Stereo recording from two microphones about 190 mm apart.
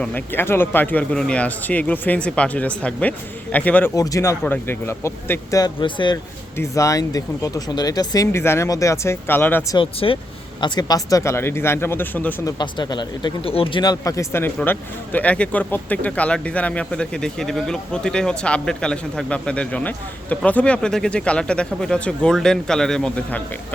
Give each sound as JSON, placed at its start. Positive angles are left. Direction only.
{"t": 0.0, "sound": "speech", "side_deg": 10}
{"t": 9.7, "sound": "speech", "side_deg": 30}
{"t": 12.5, "sound": "speech", "side_deg": 20}